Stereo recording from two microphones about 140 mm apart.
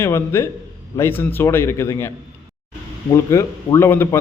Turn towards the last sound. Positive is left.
turn(degrees=15)  # may be behind; listen again after turning